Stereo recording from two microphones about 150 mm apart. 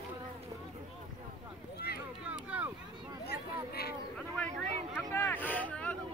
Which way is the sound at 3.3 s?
90° left.